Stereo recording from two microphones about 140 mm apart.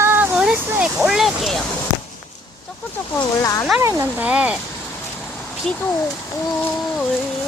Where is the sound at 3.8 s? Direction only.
20° right (ahead or behind).